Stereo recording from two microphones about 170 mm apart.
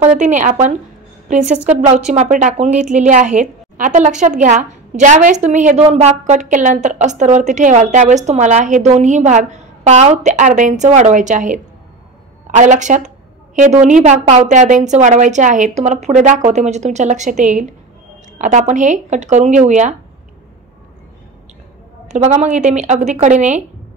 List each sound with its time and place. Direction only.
0.0 s a woman's voice: 40° right (ahead or behind)
2.7 s a woman's voice: 5° right (ahead or behind)
3.0 s a woman's voice: 45° right (ahead or behind)
22.0 s a woman's voice: 45° right (ahead or behind)